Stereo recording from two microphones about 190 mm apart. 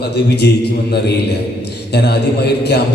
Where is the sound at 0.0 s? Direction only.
60° left (ahead or behind).